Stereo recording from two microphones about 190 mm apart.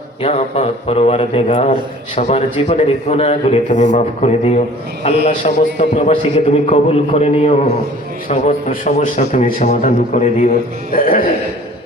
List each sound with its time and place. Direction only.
0.2 s a man's voice: 35° left (ahead or behind)
5.2 s a man's voice: 45° left (ahead or behind)
5.9 s a man's voice: 30° left (ahead or behind); by 11.3 s 50° left (ahead or behind)